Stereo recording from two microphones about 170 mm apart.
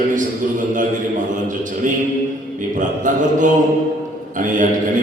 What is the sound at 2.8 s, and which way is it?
Speech, 50° right (ahead or behind).